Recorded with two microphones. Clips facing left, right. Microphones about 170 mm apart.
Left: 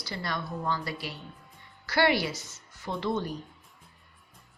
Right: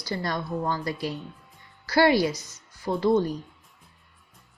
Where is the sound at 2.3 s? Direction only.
15° right (ahead or behind).